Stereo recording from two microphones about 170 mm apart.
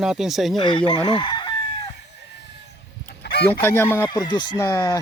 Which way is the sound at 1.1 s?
30° left (ahead or behind).